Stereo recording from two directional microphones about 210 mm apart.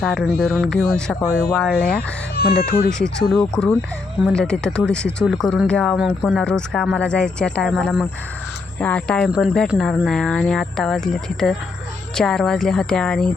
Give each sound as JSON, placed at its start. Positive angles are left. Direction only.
{"t": 0.0, "sound": "speech", "side_deg": 0}
{"t": 2.0, "sound": "speech", "side_deg": 50}
{"t": 3.0, "sound": "speech", "side_deg": 5}